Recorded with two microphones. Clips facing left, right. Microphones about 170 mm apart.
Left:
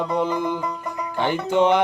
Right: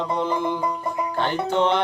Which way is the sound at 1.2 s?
15° left (ahead or behind).